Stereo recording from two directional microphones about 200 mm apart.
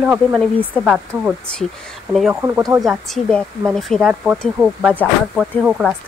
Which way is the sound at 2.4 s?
20° right (ahead or behind).